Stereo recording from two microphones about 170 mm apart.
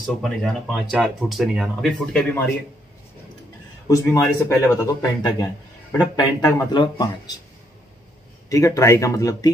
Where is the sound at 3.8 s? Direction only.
20° left (ahead or behind).